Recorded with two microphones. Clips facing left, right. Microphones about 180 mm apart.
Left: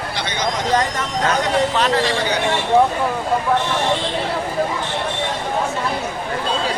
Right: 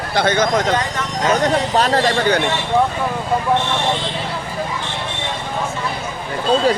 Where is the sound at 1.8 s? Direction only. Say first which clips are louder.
Right 2 dB; 45° right (ahead or behind).